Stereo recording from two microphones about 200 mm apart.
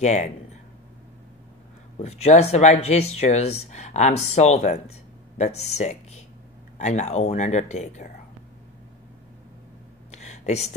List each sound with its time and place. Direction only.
0.0 s speech: 35° left (ahead or behind)
2.0 s speech: 35° left (ahead or behind)
10.1 s a sound: 35° left (ahead or behind)